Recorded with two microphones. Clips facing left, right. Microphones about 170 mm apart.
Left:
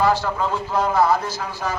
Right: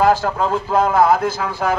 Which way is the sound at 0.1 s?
50° right (ahead or behind).